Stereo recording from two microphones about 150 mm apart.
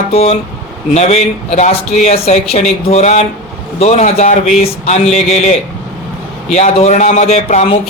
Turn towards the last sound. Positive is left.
turn(degrees=50)  # may be behind; listen again after turning